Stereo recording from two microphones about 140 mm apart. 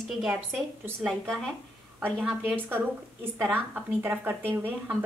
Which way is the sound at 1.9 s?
15° right (ahead or behind).